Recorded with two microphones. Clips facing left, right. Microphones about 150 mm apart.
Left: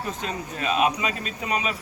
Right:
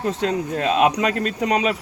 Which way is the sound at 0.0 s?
75° right (ahead or behind).